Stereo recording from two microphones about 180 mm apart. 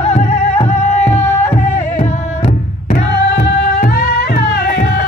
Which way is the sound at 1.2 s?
10° left (ahead or behind).